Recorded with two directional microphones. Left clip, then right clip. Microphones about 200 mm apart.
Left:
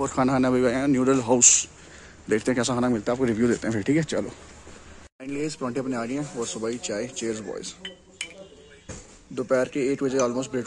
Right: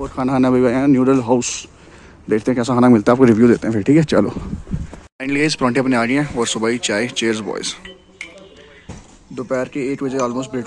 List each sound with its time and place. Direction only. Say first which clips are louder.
0.3 s a man's voice: right 10 dB; 10° right (ahead or behind)
2.8 s a man's voice: right 12 dB; 25° right (ahead or behind)
5.2 s speech: right 13 dB; 5° right (ahead or behind)
9.3 s speech: right 2 dB; centre (ahead or behind)